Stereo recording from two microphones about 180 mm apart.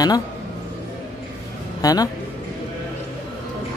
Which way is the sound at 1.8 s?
20° left (ahead or behind).